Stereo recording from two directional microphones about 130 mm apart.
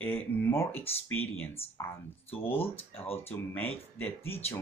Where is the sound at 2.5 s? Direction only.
45° left (ahead or behind).